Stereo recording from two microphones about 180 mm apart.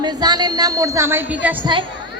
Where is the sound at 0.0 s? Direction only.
25° right (ahead or behind).